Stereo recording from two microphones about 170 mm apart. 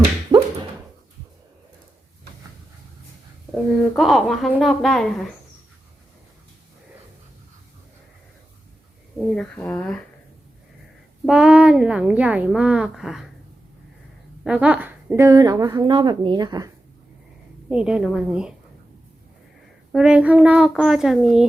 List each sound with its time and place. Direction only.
0.3 s dog: 20° right (ahead or behind)
3.5 s a woman's voice: centre (ahead or behind)
9.3 s speech: 5° left (ahead or behind)
11.3 s a woman's voice: 5° right (ahead or behind)
14.4 s speech: 5° right (ahead or behind); by 16.7 s 25° right (ahead or behind)
17.7 s a woman's voice: 5° right (ahead or behind)
19.9 s a woman's voice: 5° right (ahead or behind)